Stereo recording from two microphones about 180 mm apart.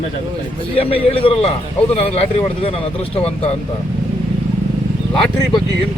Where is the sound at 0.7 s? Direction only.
30° left (ahead or behind).